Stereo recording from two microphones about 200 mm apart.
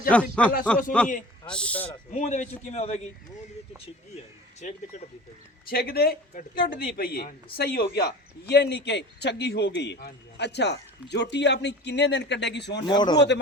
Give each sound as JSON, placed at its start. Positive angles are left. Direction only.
{"t": 0.1, "sound": "speech", "side_deg": 5}
{"t": 2.0, "sound": "a man's voice", "side_deg": 35}
{"t": 4.6, "sound": "a man's voice", "side_deg": 40}
{"t": 5.6, "sound": "a man's voice", "side_deg": 50}
{"t": 12.9, "sound": "speech", "side_deg": 20}
{"t": 13.1, "sound": "speech", "side_deg": 60}